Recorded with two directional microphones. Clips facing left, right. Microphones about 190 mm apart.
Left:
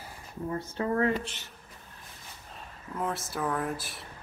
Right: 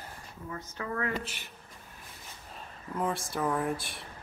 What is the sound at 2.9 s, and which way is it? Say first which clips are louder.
Speech: right 1 dB; centre (ahead or behind).